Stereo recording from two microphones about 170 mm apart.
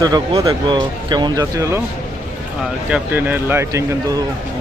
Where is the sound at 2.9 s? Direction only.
10° right (ahead or behind).